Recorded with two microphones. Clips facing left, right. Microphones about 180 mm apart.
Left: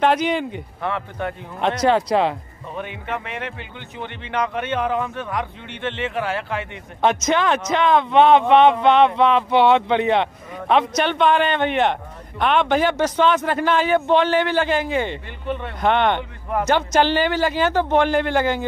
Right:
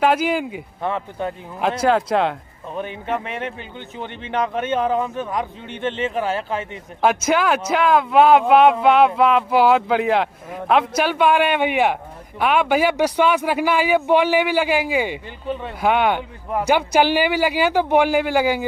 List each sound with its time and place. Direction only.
0.0 s speech: 5° right (ahead or behind)
0.8 s speech: 20° right (ahead or behind)
1.6 s speech: 5° right (ahead or behind)
2.8 s speech: 40° right (ahead or behind)
4.4 s speech: 20° right (ahead or behind)
7.0 s speech: 5° right (ahead or behind)